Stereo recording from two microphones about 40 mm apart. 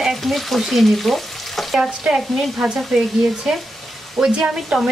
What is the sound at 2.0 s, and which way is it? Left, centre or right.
Speech, centre.